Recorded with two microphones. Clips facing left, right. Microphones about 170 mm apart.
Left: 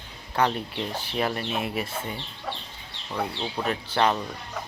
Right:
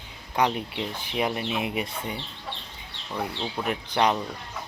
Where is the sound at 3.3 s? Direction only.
5° left (ahead or behind).